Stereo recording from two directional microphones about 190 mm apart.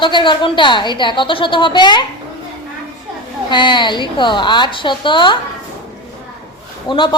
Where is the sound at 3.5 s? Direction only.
25° left (ahead or behind).